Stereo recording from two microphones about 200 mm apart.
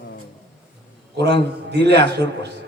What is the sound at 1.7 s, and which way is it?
Speech, 60° right (ahead or behind).